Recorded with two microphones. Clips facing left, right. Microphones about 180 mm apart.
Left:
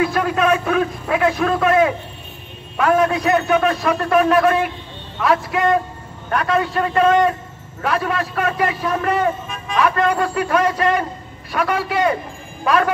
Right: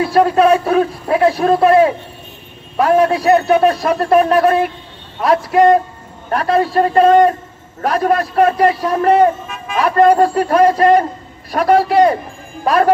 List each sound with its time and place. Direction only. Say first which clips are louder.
0.0 s a man's voice: right 6 dB; 35° right (ahead or behind)